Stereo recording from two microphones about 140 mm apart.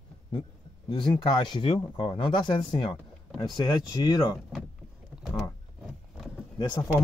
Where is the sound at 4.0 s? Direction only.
30° left (ahead or behind).